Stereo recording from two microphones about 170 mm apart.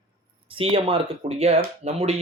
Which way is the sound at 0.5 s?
30° right (ahead or behind).